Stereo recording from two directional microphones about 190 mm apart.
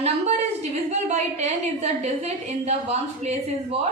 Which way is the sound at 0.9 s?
35° right (ahead or behind).